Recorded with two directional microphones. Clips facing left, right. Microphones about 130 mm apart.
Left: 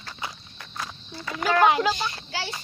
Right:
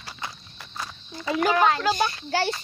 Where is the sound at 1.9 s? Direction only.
50° right (ahead or behind).